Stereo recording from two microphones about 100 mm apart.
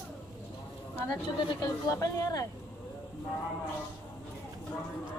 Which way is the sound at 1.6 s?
35° left (ahead or behind).